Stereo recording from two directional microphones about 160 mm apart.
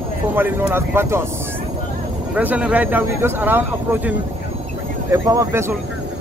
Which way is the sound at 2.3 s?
10° right (ahead or behind).